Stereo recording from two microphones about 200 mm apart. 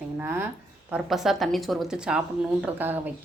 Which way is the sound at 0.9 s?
Centre (ahead or behind).